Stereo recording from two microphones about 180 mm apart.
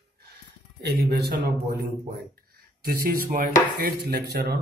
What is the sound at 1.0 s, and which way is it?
Speech, 60° right (ahead or behind).